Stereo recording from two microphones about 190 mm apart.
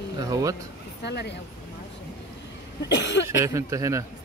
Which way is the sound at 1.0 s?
60° left (ahead or behind).